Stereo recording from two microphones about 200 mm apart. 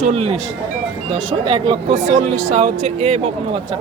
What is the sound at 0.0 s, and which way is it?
Speech, 30° right (ahead or behind).